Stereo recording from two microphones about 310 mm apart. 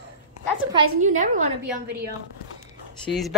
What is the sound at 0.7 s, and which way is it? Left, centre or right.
Speech, centre.